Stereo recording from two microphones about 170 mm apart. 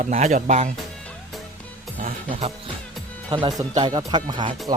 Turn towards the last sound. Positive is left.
turn(degrees=-25)  # may be behind; listen again after turning